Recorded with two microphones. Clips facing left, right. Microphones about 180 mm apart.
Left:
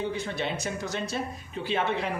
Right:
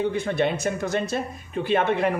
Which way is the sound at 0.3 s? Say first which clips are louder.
Right 8 dB; 55° right (ahead or behind).